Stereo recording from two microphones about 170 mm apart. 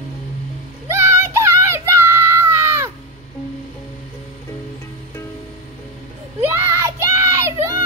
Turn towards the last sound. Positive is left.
turn(degrees=-15)  # may be behind; listen again after turning